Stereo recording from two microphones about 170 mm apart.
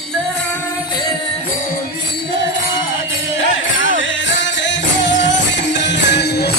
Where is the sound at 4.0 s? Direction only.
90° left; by 6.5 s 75° left (ahead or behind).